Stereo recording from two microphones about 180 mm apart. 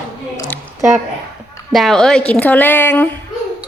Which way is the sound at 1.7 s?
Centre (ahead or behind).